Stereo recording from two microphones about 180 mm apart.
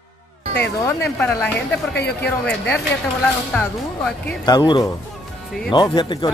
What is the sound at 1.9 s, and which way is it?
Speech, 65° left (ahead or behind).